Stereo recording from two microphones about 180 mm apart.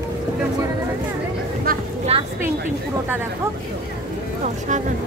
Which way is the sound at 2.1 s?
35° right (ahead or behind).